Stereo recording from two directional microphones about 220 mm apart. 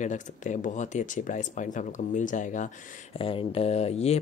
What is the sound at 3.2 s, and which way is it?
Speech, 25° left (ahead or behind).